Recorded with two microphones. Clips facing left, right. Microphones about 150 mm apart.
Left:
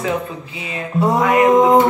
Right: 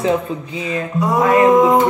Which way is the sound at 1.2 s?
30° right (ahead or behind).